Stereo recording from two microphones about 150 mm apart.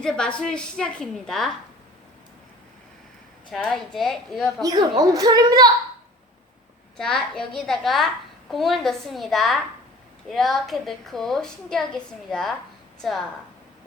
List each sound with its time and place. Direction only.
0.0 s a woman's voice: 5° left (ahead or behind)
3.5 s a woman's voice: centre (ahead or behind)
4.6 s a woman's voice: 25° right (ahead or behind)
6.9 s a woman's voice: 5° left (ahead or behind)